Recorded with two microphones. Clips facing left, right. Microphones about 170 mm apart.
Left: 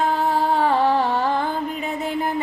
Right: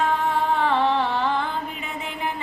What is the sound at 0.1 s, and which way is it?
Music, 35° left (ahead or behind).